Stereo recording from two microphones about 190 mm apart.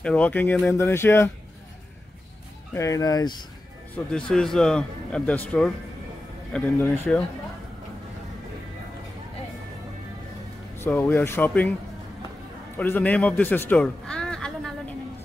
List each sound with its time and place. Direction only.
0.0 s speech: 5° left (ahead or behind)
2.7 s speech: 15° left (ahead or behind)
4.0 s a man's voice: 5° left (ahead or behind)
10.8 s speech: 10° left (ahead or behind)
12.7 s a man's voice: 10° left (ahead or behind)